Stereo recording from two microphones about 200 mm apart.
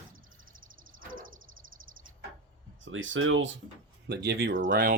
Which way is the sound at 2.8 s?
70° right (ahead or behind).